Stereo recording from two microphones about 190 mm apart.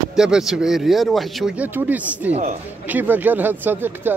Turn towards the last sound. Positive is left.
turn(degrees=-10)  # may be behind; listen again after turning